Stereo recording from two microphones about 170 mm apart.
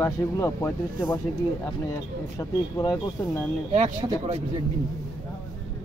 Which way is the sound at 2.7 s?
20° left (ahead or behind).